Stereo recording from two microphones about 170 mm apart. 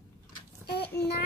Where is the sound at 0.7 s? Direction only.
75° left (ahead or behind).